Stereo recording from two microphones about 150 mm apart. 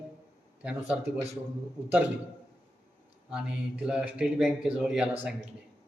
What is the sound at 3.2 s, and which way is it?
Speech, 5° right (ahead or behind).